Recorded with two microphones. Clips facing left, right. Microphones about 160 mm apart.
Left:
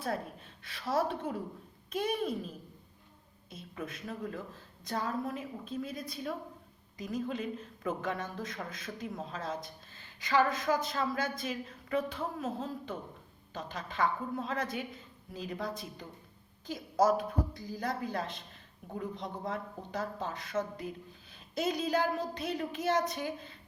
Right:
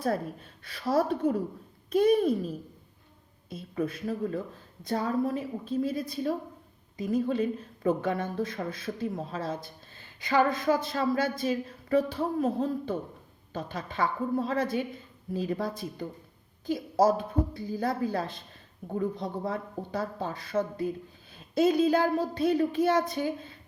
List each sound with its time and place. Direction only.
0.0 s a woman's voice: 40° right (ahead or behind)
3.5 s a woman's voice: 35° right (ahead or behind)